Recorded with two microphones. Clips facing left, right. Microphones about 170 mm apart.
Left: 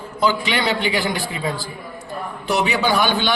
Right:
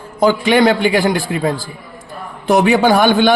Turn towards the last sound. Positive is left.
turn(degrees=-50)  # may be behind; listen again after turning